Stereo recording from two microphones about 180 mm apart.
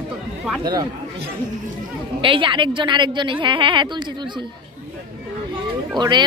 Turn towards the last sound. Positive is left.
turn(degrees=-25)  # may be behind; listen again after turning